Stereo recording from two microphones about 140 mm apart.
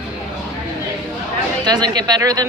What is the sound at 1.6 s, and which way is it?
Speech, 30° right (ahead or behind).